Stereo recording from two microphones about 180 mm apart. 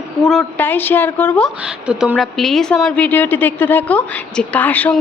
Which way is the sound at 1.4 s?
5° right (ahead or behind).